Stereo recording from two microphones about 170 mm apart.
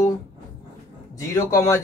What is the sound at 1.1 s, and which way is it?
Speech, 15° left (ahead or behind).